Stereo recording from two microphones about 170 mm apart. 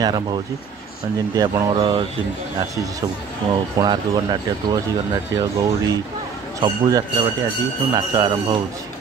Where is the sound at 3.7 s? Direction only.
25° right (ahead or behind).